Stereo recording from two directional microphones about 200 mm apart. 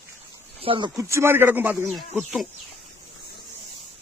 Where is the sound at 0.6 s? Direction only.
25° right (ahead or behind); by 2.4 s centre (ahead or behind).